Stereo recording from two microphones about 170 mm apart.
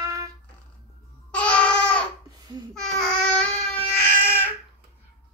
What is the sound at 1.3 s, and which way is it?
Babbling, 5° left (ahead or behind).